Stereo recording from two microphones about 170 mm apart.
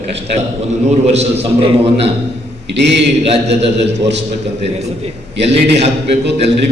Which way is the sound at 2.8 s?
90° right.